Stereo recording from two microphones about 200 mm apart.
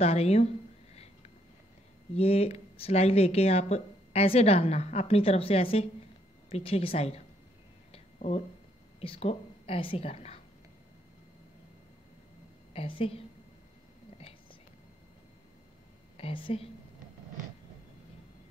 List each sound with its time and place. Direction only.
0.0 s speech: 30° left (ahead or behind)
0.9 s a sound: 30° left (ahead or behind)
2.1 s a woman's voice: 30° left (ahead or behind)
7.9 s a sound: 30° left (ahead or behind)
9.0 s a woman's voice: 30° left (ahead or behind)
12.7 s a woman's voice: 25° left (ahead or behind)
16.2 s a woman's voice: 25° left (ahead or behind)